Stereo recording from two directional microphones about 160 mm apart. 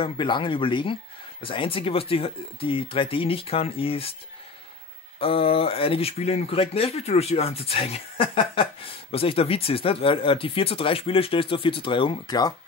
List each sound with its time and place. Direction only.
0.0 s speech: 30° left (ahead or behind)
5.2 s speech: 35° left (ahead or behind)